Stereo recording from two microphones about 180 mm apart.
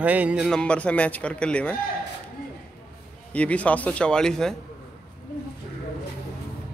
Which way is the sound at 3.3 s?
5° left (ahead or behind).